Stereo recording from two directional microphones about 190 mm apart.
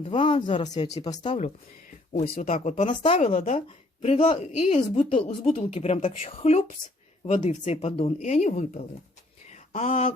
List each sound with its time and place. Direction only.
0.0 s speech: 30° left (ahead or behind)
1.4 s speech: 40° left (ahead or behind)
9.5 s a sound: 35° left (ahead or behind)